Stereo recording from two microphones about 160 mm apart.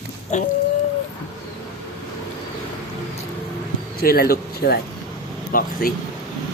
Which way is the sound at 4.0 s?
70° left (ahead or behind).